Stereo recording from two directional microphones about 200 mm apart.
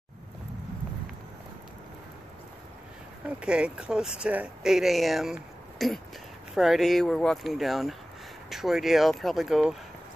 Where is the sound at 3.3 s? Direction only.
5° right (ahead or behind).